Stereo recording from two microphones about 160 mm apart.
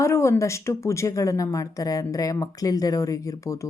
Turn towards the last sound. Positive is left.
turn(degrees=20)  # may be behind; listen again after turning